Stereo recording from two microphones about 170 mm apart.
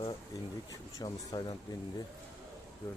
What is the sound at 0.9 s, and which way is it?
Speech, 20° left (ahead or behind).